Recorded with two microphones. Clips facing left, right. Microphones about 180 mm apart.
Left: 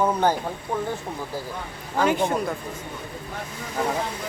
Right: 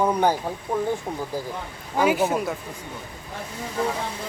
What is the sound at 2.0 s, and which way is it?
Speech, 5° right (ahead or behind).